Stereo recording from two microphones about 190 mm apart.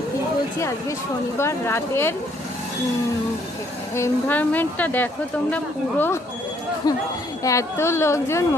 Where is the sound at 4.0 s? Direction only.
10° left (ahead or behind).